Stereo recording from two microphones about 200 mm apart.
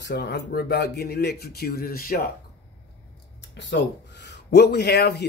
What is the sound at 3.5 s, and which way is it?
Speech, 60° left (ahead or behind).